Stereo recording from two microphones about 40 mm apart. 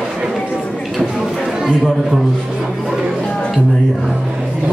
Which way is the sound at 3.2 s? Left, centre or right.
Left.